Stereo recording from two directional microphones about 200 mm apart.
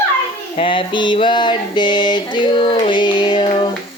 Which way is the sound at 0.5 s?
25° left (ahead or behind).